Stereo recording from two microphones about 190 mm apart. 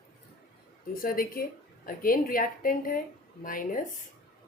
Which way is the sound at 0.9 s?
50° left (ahead or behind).